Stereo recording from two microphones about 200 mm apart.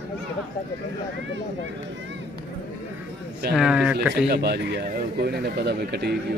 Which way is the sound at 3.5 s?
5° right (ahead or behind).